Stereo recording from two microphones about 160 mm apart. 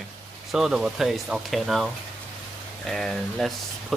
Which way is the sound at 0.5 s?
5° right (ahead or behind).